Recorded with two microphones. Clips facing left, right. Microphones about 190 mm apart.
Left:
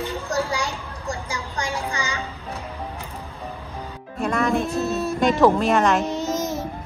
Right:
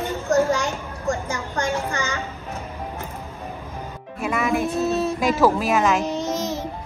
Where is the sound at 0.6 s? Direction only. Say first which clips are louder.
Right 2 dB; 35° left (ahead or behind).